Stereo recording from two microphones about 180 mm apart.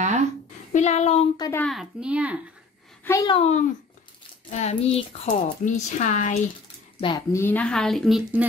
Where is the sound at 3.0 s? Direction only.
15° left (ahead or behind).